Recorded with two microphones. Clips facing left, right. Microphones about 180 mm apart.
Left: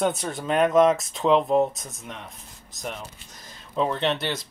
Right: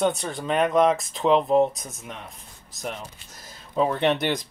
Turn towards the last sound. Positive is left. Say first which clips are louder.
# right 3 dB
turn(degrees=-15)  # may be behind; listen again after turning